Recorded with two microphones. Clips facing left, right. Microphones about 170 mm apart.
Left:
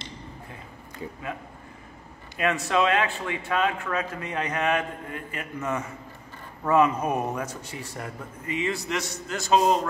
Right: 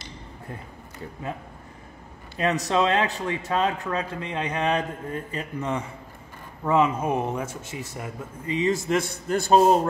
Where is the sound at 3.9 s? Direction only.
25° right (ahead or behind).